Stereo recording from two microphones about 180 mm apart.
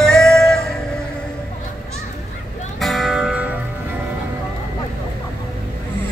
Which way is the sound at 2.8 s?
Centre (ahead or behind).